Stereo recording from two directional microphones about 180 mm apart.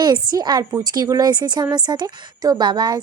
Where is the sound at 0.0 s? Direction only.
20° right (ahead or behind).